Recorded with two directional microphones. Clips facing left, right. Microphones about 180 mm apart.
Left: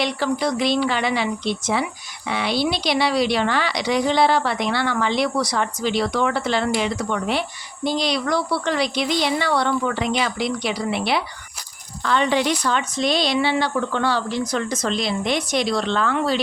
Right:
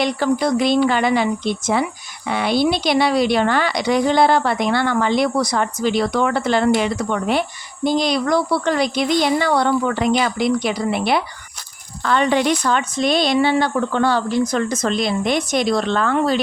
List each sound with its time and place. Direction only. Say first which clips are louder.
0.0 s speech: right 4 dB; 50° right (ahead or behind)